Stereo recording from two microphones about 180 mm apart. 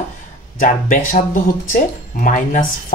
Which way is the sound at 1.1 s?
45° left (ahead or behind).